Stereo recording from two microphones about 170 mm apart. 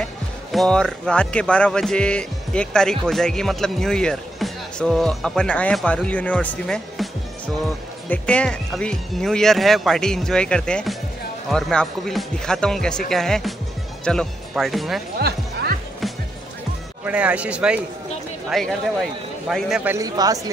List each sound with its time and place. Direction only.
0.0 s speech: centre (ahead or behind)
15.1 s music: 65° right (ahead or behind)
17.0 s speech: 10° right (ahead or behind)
19.9 s speech: 20° right (ahead or behind)